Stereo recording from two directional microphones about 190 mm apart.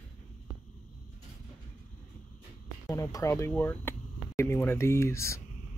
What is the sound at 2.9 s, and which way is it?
Speech, 15° left (ahead or behind).